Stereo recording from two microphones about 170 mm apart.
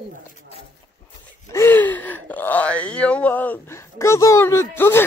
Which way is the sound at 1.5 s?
15° left (ahead or behind).